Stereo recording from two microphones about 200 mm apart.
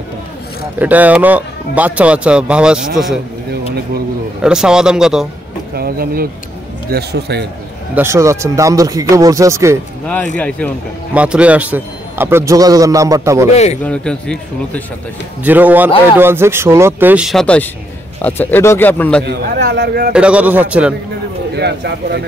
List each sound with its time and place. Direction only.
0.7 s a man's voice: 10° right (ahead or behind)
4.4 s a man's voice: 5° right (ahead or behind)
5.8 s a man's voice: 50° right (ahead or behind)
7.9 s a man's voice: 15° right (ahead or behind)
11.1 s a man's voice: 5° right (ahead or behind)
13.5 s a man's voice: 35° left (ahead or behind)
13.8 s a man's voice: 5° left (ahead or behind)
15.4 s a man's voice: 10° right (ahead or behind); by 19.2 s 5° left (ahead or behind)
19.2 s a man's voice: 55° right (ahead or behind)
20.1 s a man's voice: 5° right (ahead or behind)
21.5 s a man's voice: 55° right (ahead or behind)